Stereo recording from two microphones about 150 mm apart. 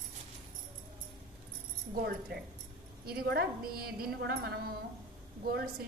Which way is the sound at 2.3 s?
90° right.